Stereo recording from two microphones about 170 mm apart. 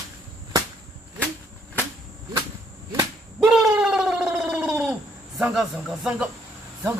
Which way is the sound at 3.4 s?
5° right (ahead or behind).